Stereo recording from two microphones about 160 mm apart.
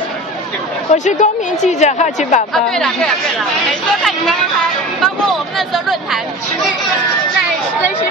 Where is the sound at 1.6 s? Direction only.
45° left (ahead or behind).